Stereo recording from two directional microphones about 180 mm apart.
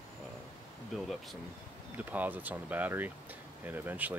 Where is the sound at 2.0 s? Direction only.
10° right (ahead or behind).